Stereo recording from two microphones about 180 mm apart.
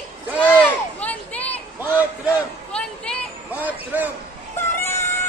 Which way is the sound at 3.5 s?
10° right (ahead or behind).